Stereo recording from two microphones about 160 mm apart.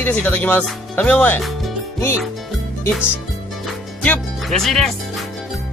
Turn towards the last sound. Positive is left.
turn(degrees=0)  # may be behind; listen again after turning